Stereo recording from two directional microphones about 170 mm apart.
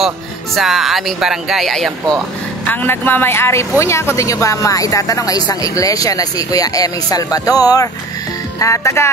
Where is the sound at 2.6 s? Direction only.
10° left (ahead or behind).